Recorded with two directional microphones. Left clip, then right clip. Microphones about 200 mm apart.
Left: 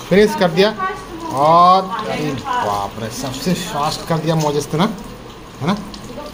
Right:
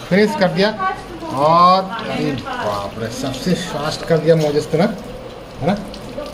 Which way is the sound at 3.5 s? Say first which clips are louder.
Left 3 dB; 15° left (ahead or behind).